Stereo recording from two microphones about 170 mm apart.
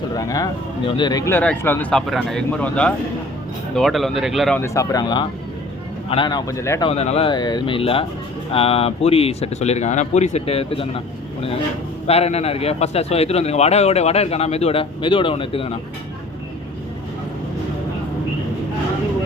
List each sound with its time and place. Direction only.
0.2 s speech: 20° left (ahead or behind); by 4.6 s centre (ahead or behind)
4.6 s speech: 20° left (ahead or behind)
6.8 s a man's voice: 40° left (ahead or behind)
12.0 s a man's voice: 35° left (ahead or behind)